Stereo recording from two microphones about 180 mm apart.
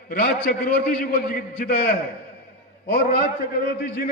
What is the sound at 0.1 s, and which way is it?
A man's voice, 65° left (ahead or behind).